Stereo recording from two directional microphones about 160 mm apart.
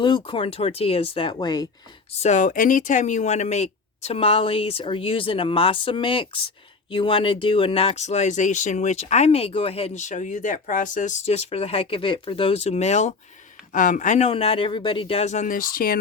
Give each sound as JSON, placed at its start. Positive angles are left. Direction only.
{"t": 0.0, "sound": "speech", "side_deg": 30}
{"t": 2.1, "sound": "speech", "side_deg": 45}
{"t": 14.3, "sound": "speech", "side_deg": 35}